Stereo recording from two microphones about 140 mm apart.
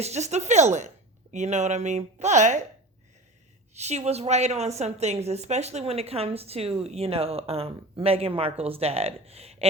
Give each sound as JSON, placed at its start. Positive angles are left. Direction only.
{"t": 0.0, "sound": "speech", "side_deg": -50}
{"t": 3.8, "sound": "a woman's voice", "side_deg": -50}